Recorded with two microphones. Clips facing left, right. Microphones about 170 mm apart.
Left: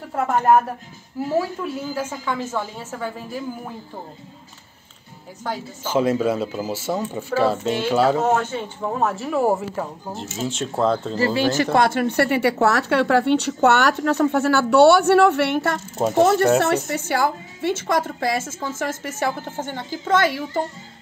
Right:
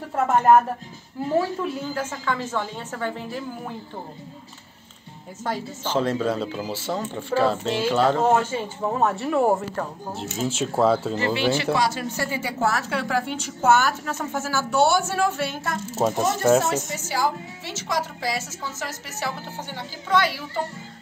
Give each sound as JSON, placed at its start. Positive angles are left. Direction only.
{"t": 0.1, "sound": "speech", "side_deg": -5}
{"t": 1.3, "sound": "a woman's voice", "side_deg": 5}
{"t": 5.4, "sound": "a woman's voice", "side_deg": 0}
{"t": 8.4, "sound": "speech", "side_deg": -10}
{"t": 11.1, "sound": "speech", "side_deg": 40}
{"t": 11.7, "sound": "a woman's voice", "side_deg": 60}